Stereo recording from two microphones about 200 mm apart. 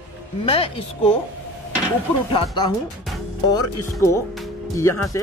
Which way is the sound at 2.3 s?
20° left (ahead or behind).